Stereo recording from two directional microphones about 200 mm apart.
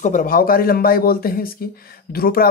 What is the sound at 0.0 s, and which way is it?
Speech, 40° left (ahead or behind).